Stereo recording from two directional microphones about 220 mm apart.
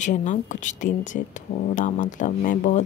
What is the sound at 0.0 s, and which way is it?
Speech, 35° left (ahead or behind).